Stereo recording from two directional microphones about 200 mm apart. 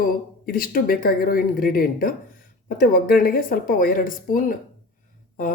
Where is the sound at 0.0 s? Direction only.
45° left (ahead or behind).